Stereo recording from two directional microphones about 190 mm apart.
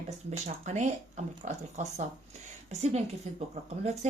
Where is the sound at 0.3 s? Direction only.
40° right (ahead or behind).